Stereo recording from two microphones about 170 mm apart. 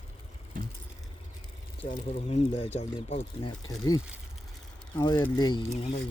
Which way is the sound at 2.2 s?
40° left (ahead or behind).